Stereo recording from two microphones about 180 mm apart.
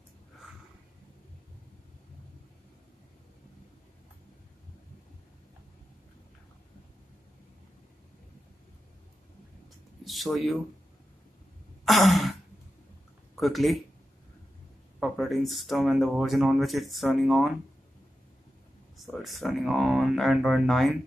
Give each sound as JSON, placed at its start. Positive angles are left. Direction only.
{"t": 10.0, "sound": "speech", "side_deg": 0}
{"t": 11.8, "sound": "sigh", "side_deg": 0}
{"t": 13.4, "sound": "speech", "side_deg": 0}
{"t": 15.0, "sound": "speech", "side_deg": 0}
{"t": 18.9, "sound": "speech", "side_deg": 0}